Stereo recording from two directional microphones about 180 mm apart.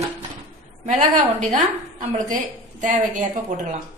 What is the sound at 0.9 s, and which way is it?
A woman's voice, 45° right (ahead or behind).